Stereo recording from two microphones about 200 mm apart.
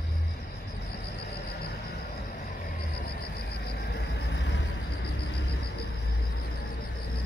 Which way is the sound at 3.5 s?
55° left (ahead or behind).